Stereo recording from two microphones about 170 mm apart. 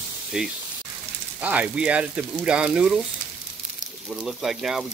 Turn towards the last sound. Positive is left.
turn(degrees=-5)  # may be behind; listen again after turning